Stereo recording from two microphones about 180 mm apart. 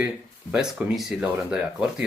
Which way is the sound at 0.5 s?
5° right (ahead or behind).